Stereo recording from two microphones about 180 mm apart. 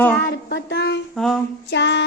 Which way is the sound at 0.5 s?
65° left (ahead or behind).